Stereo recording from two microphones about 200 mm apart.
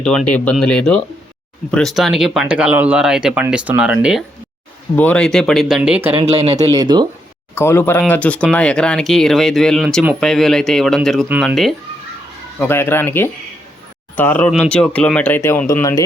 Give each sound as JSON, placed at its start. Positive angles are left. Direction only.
{"t": 0.0, "sound": "speech", "side_deg": 5}
{"t": 4.9, "sound": "speech", "side_deg": 5}
{"t": 6.6, "sound": "speech", "side_deg": -20}
{"t": 7.5, "sound": "speech", "side_deg": 10}
{"t": 12.5, "sound": "speech", "side_deg": 10}